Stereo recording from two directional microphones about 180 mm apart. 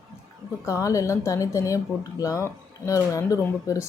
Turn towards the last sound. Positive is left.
turn(degrees=20)  # may be behind; listen again after turning